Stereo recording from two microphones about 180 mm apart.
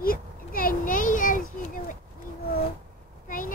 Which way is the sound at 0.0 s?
55° left (ahead or behind).